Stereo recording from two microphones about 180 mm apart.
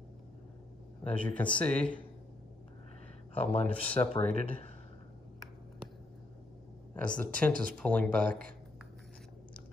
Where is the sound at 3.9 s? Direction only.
30° left (ahead or behind).